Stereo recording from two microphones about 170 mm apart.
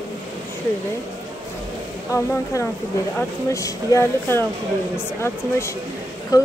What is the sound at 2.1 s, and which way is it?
A woman's voice, 15° left (ahead or behind).